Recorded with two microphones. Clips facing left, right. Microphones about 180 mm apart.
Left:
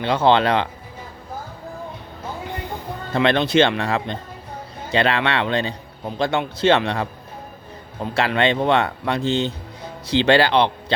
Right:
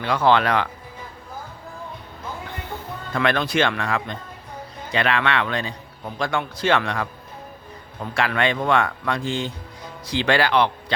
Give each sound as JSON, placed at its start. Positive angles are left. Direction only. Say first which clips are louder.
{"t": 0.0, "sound": "a man's voice", "louder": "left 2 dB", "side_deg": 25}
{"t": 3.1, "sound": "a man's voice", "louder": "left 4 dB", "side_deg": 25}